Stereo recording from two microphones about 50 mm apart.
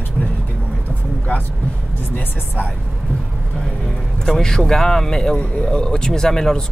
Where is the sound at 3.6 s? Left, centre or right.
Centre.